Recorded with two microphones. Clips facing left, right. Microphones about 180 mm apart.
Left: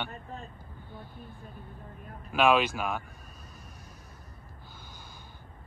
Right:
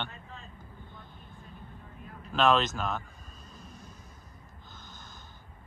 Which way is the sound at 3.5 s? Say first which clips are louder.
Right 2 dB; 10° left (ahead or behind).